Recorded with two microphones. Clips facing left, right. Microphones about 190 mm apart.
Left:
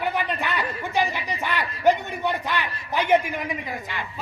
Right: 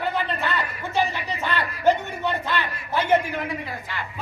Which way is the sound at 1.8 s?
15° left (ahead or behind).